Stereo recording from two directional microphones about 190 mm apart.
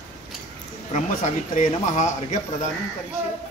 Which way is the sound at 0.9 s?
40° left (ahead or behind).